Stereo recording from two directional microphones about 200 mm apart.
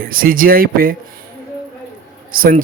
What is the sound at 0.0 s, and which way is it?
Speech, 45° right (ahead or behind).